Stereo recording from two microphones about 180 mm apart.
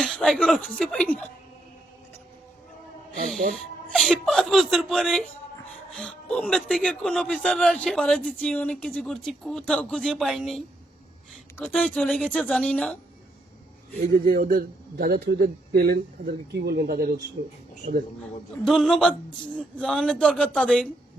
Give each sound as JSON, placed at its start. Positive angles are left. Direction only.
{"t": 0.0, "sound": "speech", "side_deg": 5}
{"t": 3.5, "sound": "speech", "side_deg": 0}
{"t": 11.6, "sound": "speech", "side_deg": 5}
{"t": 14.3, "sound": "a man's voice", "side_deg": -55}
{"t": 17.4, "sound": "speech", "side_deg": -80}
{"t": 18.6, "sound": "speech", "side_deg": 0}